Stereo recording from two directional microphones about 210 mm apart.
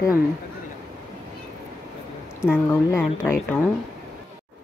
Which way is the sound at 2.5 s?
10° left (ahead or behind).